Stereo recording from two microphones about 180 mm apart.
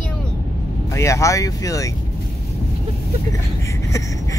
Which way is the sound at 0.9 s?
15° left (ahead or behind).